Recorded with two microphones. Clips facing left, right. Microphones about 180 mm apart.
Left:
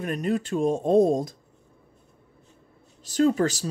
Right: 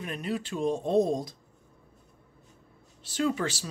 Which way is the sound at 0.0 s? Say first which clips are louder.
Left 7 dB; 45° left (ahead or behind).